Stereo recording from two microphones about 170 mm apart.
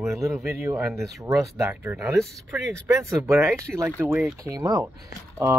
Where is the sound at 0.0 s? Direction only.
15° right (ahead or behind).